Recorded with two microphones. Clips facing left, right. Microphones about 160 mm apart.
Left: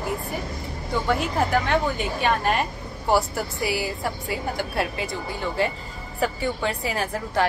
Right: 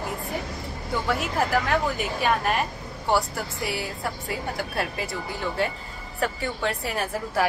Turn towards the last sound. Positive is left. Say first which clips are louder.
# left 1 dB
turn(degrees=0)  # may be behind; listen again after turning